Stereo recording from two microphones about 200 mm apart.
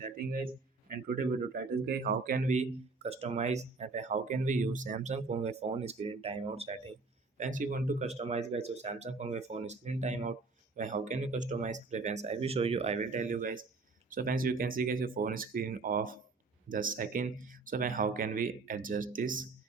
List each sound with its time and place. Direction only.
0.0 s speech: 45° right (ahead or behind)